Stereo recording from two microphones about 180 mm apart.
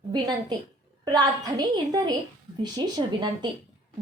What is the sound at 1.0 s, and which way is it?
Speech, 20° right (ahead or behind).